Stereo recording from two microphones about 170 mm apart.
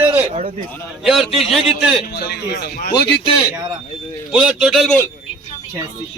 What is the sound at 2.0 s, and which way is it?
Speech, 70° left (ahead or behind).